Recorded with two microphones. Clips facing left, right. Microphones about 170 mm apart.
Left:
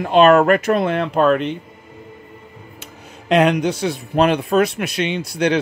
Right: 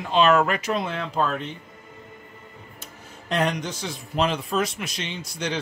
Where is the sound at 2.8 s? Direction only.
70° left (ahead or behind).